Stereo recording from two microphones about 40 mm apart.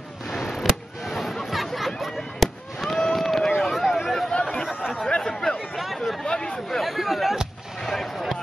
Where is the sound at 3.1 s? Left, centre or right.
Centre.